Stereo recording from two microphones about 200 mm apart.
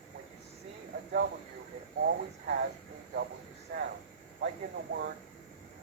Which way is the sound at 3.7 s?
55° right (ahead or behind).